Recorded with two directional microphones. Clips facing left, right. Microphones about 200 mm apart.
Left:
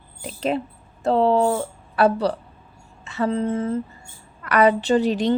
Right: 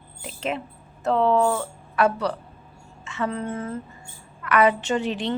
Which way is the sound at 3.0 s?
35° left (ahead or behind).